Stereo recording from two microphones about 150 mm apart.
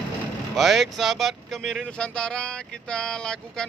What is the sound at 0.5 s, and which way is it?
Speech, centre (ahead or behind).